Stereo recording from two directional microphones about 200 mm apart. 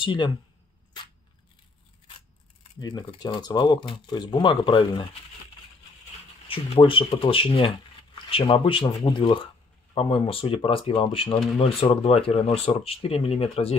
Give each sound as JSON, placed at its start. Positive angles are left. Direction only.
{"t": 0.0, "sound": "speech", "side_deg": 25}
{"t": 2.8, "sound": "speech", "side_deg": 20}
{"t": 6.4, "sound": "speech", "side_deg": 25}